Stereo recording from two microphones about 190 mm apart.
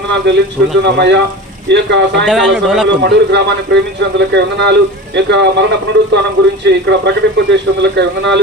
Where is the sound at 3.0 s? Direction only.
65° right (ahead or behind).